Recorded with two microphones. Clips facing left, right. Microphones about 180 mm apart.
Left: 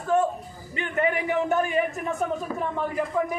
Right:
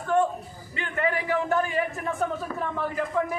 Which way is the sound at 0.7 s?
20° left (ahead or behind).